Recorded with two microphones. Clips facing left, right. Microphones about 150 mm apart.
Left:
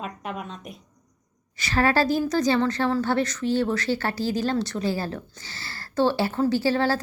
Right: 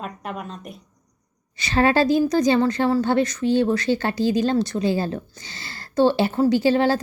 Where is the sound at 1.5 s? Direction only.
20° right (ahead or behind).